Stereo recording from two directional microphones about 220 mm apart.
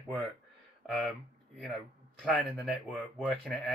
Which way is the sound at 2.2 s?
5° left (ahead or behind).